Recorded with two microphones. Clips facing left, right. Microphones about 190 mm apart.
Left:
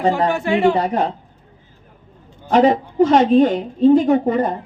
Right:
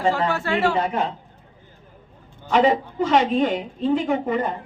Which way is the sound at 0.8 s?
40° left (ahead or behind).